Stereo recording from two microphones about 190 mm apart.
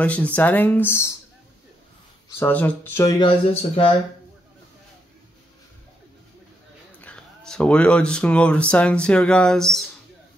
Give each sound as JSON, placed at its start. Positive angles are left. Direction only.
{"t": 0.0, "sound": "speech", "side_deg": 5}
{"t": 2.3, "sound": "speech", "side_deg": 10}
{"t": 7.0, "sound": "speech", "side_deg": 5}